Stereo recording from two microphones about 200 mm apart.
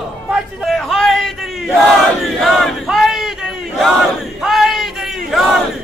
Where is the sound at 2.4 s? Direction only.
Centre (ahead or behind).